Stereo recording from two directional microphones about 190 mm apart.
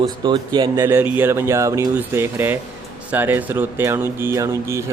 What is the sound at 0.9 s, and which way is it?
Speech, 10° right (ahead or behind).